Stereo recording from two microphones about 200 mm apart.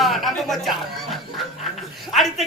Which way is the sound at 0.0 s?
Centre (ahead or behind).